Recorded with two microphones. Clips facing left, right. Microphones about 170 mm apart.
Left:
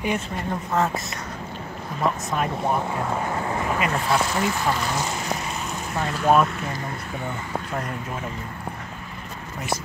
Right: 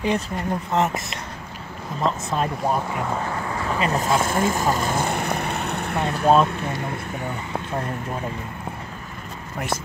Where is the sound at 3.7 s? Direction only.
30° right (ahead or behind).